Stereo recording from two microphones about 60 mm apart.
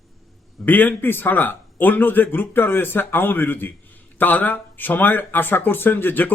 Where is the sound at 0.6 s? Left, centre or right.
Left.